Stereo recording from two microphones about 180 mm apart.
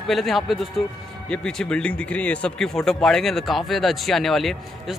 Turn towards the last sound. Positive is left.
turn(degrees=0)  # may be behind; listen again after turning